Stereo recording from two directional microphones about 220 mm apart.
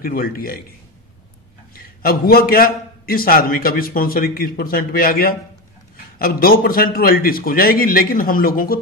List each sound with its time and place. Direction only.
0.0 s a man's voice: 40° left (ahead or behind)
2.0 s a man's voice: 40° left (ahead or behind)